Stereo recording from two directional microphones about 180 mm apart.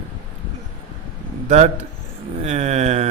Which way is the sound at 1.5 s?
40° right (ahead or behind).